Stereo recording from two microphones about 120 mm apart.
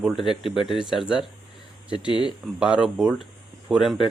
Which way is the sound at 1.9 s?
40° left (ahead or behind).